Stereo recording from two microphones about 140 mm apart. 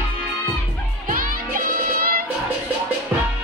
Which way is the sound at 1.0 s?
85° right.